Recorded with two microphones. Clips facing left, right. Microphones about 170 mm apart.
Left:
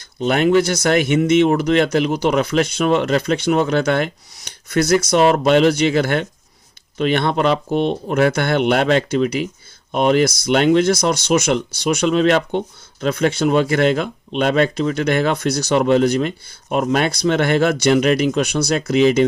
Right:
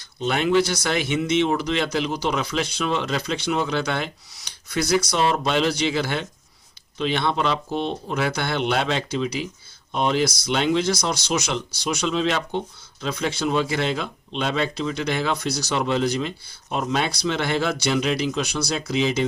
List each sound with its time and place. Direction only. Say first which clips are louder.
0.2 s speech: left 5 dB; 45° left (ahead or behind)